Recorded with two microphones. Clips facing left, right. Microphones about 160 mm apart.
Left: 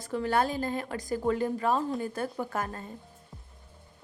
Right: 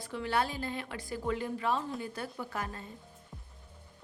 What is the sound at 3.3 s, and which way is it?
Music, centre (ahead or behind).